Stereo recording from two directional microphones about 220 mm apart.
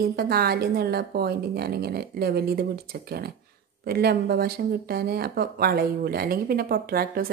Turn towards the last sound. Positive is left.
turn(degrees=-45)  # may be behind; listen again after turning